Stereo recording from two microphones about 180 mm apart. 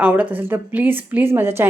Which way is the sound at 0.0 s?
10° right (ahead or behind).